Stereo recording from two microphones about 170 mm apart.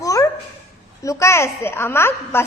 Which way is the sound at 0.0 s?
20° left (ahead or behind).